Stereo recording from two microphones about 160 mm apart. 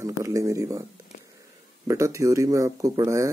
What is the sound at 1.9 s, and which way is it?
Speech, 20° right (ahead or behind).